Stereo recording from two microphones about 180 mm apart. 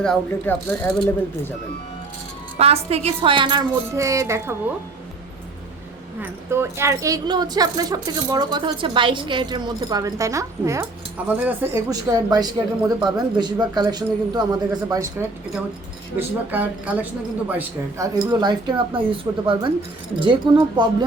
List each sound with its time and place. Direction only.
0.0 s speech: 5° left (ahead or behind)
2.6 s speech: 35° right (ahead or behind); by 4.5 s 15° right (ahead or behind)
6.5 s speech: 15° right (ahead or behind)
16.1 s speech: 10° right (ahead or behind); by 20.8 s 25° right (ahead or behind)